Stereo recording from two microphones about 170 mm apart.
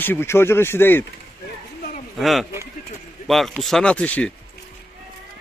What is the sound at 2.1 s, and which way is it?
Speech, centre (ahead or behind).